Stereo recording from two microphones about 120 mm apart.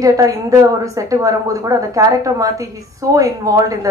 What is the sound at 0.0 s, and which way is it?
A woman's voice, 30° right (ahead or behind).